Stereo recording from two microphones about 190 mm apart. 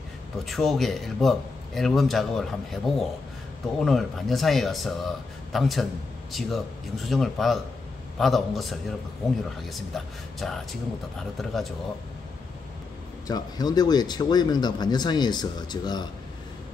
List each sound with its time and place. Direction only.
0.5 s a man's voice: centre (ahead or behind)
13.3 s speech: 20° left (ahead or behind)